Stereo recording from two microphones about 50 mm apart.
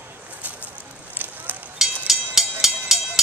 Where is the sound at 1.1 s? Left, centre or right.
Right.